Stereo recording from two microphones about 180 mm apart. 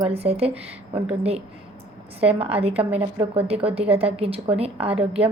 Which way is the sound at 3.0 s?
30° right (ahead or behind).